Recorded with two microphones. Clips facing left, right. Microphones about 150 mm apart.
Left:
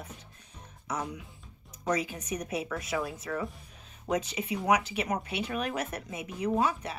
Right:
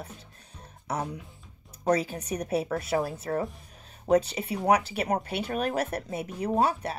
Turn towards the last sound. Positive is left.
turn(degrees=-35)  # may be behind; listen again after turning